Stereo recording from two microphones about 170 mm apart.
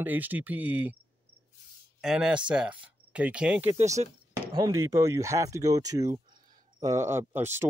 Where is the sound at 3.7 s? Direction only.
40° right (ahead or behind).